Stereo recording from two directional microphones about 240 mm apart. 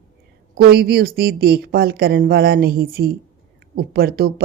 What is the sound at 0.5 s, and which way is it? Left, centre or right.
A woman's voice, right.